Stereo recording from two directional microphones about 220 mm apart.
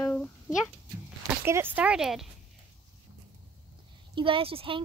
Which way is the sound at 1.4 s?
10° right (ahead or behind).